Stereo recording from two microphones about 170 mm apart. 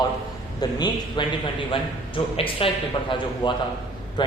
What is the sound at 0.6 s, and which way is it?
Speech, 25° left (ahead or behind).